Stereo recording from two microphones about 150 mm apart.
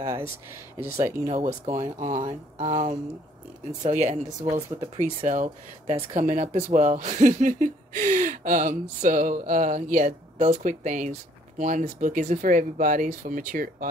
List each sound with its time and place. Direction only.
0.0 s speech: 20° right (ahead or behind)
1.3 s speech: 50° right (ahead or behind)
2.0 s speech: 60° right (ahead or behind)
3.8 s speech: 50° right (ahead or behind); by 13.8 s 70° right (ahead or behind)